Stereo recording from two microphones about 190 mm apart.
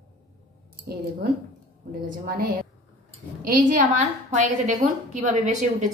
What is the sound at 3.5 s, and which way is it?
A woman's voice, 45° right (ahead or behind).